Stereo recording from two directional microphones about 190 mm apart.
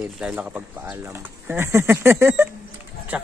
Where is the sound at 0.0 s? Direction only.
5° right (ahead or behind).